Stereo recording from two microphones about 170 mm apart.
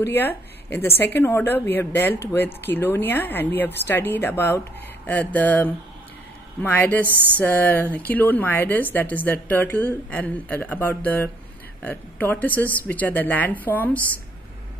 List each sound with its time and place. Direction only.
0.0 s a woman's voice: 10° left (ahead or behind)